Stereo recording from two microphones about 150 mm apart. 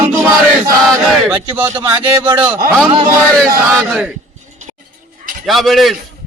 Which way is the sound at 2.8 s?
35° right (ahead or behind).